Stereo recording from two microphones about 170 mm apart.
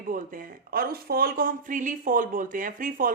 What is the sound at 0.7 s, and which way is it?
A woman's voice, 60° right (ahead or behind).